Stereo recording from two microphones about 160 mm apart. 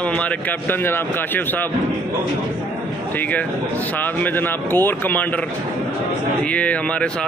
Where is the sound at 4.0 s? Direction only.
10° left (ahead or behind).